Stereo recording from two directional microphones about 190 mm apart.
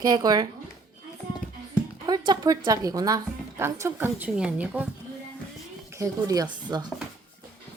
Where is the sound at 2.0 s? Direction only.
20° right (ahead or behind).